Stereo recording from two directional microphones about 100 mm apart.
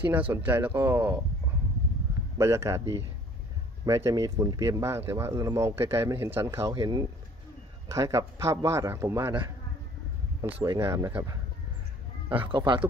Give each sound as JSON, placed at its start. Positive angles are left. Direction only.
{"t": 0.0, "sound": "speech", "side_deg": -20}
{"t": 2.3, "sound": "speech", "side_deg": -30}
{"t": 10.8, "sound": "speech", "side_deg": -30}
{"t": 12.3, "sound": "speech", "side_deg": -55}